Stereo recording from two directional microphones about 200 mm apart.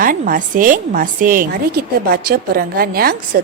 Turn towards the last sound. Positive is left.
turn(degrees=-45)  # may be behind; listen again after turning